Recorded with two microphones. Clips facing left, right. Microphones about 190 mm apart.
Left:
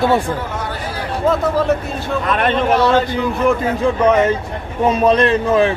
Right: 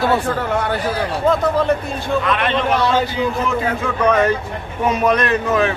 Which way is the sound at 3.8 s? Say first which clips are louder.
Left 4 dB; 25° left (ahead or behind).